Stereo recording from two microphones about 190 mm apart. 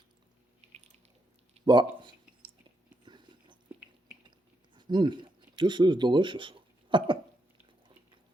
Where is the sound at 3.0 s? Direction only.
25° right (ahead or behind).